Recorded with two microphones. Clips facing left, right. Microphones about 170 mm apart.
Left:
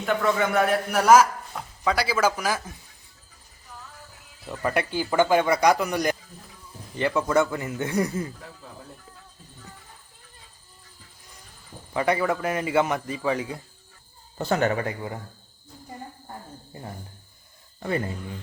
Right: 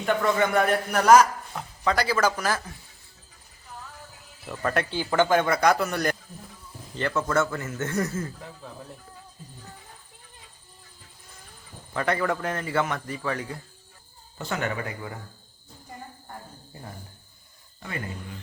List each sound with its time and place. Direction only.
0.0 s a man's voice: centre (ahead or behind)
4.4 s a man's voice: 15° left (ahead or behind)
11.9 s a man's voice: 10° left (ahead or behind)
14.3 s speech: 35° left (ahead or behind)
17.7 s speech: 35° left (ahead or behind)